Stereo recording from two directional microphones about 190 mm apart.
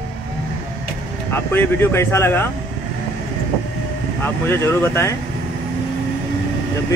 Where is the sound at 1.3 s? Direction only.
10° left (ahead or behind).